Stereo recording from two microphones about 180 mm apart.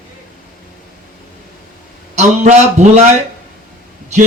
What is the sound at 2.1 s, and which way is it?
Speech, 40° right (ahead or behind).